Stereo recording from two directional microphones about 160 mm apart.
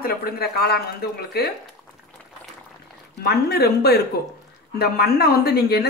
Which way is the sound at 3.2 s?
85° left.